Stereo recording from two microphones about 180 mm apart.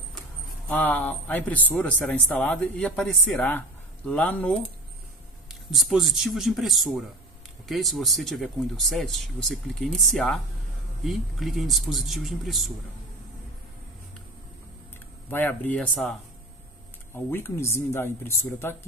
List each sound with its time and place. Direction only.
0.7 s speech: 10° left (ahead or behind)
5.7 s speech: centre (ahead or behind)
15.2 s speech: 10° left (ahead or behind)